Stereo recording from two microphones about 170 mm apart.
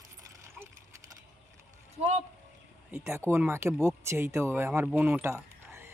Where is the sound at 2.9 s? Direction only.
15° right (ahead or behind).